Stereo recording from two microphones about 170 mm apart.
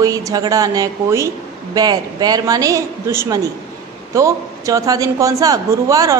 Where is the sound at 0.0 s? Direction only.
20° right (ahead or behind).